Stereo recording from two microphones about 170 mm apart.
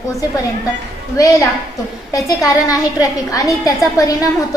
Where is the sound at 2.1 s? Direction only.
20° left (ahead or behind).